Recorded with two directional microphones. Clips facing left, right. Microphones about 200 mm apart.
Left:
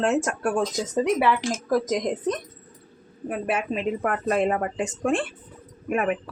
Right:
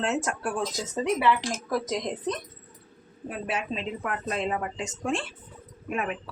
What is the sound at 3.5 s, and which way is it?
Speech, 55° left (ahead or behind).